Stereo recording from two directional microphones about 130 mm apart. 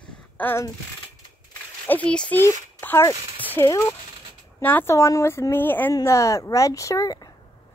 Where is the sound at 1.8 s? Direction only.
10° left (ahead or behind).